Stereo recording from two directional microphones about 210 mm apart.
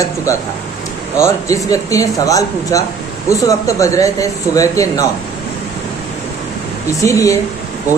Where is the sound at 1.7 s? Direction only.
15° left (ahead or behind).